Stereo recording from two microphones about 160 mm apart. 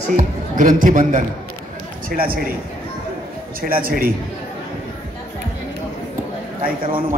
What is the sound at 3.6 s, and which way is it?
Speech, 65° right (ahead or behind).